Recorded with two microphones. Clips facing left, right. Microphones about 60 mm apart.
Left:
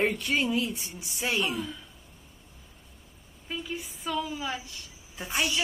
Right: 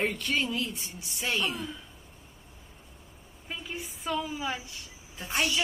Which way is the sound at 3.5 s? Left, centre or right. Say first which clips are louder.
Left 3 dB; centre.